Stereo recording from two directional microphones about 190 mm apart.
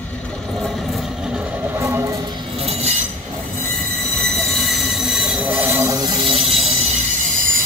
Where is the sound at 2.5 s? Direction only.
35° right (ahead or behind).